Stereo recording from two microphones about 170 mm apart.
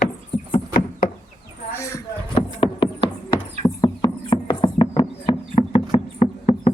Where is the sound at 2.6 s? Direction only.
30° left (ahead or behind).